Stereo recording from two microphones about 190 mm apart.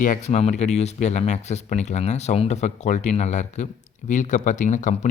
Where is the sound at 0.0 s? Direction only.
40° left (ahead or behind).